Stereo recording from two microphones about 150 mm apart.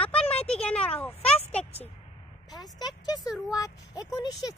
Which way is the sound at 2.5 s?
25° left (ahead or behind).